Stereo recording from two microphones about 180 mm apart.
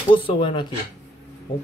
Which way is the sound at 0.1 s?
30° left (ahead or behind).